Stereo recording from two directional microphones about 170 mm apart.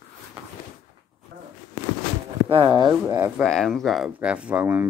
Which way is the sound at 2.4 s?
25° right (ahead or behind).